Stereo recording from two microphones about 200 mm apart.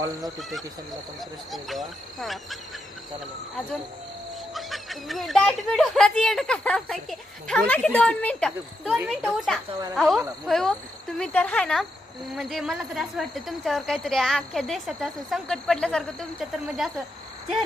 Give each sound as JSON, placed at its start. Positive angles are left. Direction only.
{"t": 0.2, "sound": "a woman's voice", "side_deg": 0}
{"t": 4.5, "sound": "a woman's voice", "side_deg": 0}